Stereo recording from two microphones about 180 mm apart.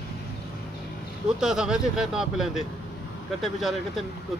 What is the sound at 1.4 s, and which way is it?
Speech, 5° right (ahead or behind).